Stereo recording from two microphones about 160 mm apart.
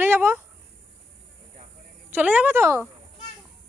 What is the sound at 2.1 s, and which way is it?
Speech, 10° right (ahead or behind).